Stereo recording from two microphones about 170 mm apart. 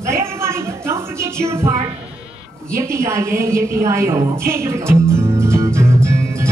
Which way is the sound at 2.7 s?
15° right (ahead or behind).